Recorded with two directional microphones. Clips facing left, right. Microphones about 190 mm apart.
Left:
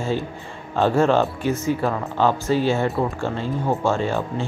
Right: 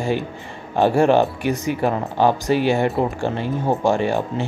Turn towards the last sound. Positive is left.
turn(degrees=-15)  # may be behind; listen again after turning